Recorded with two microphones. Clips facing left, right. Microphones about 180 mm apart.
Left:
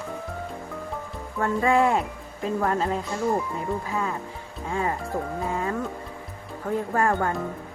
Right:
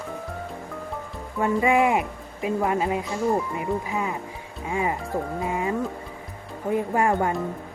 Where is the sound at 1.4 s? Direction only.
15° right (ahead or behind).